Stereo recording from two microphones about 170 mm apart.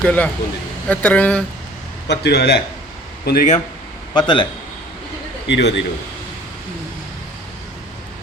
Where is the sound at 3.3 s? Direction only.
65° left (ahead or behind).